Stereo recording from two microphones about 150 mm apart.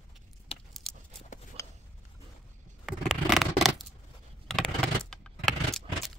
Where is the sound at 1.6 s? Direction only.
20° left (ahead or behind).